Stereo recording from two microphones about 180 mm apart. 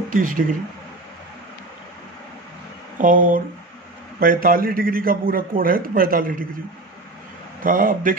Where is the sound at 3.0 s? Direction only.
50° right (ahead or behind).